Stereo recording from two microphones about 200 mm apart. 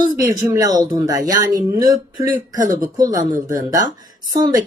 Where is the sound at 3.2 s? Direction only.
40° right (ahead or behind).